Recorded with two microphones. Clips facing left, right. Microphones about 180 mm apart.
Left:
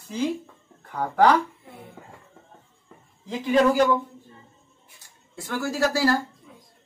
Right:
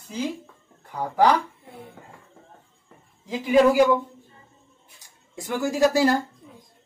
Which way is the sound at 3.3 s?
10° right (ahead or behind).